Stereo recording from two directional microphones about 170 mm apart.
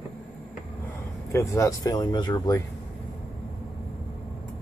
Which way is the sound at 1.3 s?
20° left (ahead or behind).